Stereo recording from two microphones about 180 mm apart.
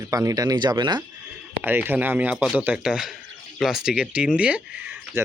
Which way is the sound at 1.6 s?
10° right (ahead or behind).